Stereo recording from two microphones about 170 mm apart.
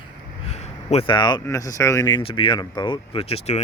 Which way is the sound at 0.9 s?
35° left (ahead or behind).